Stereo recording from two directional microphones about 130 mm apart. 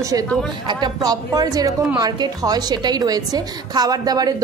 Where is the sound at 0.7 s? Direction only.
30° right (ahead or behind).